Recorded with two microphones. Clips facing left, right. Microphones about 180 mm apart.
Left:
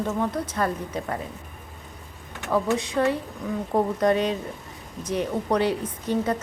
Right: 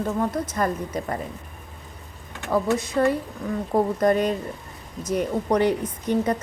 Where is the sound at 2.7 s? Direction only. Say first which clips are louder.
Right 1 dB; 15° left (ahead or behind).